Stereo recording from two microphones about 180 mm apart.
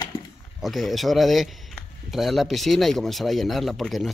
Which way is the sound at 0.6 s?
Centre (ahead or behind).